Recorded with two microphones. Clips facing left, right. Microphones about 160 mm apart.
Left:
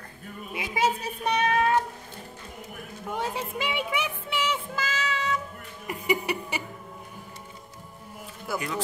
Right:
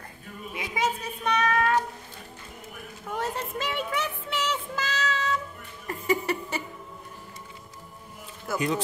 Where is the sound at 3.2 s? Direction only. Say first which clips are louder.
Even; 10° left (ahead or behind).